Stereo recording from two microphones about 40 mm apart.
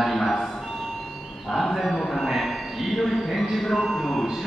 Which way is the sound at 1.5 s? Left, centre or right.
Centre.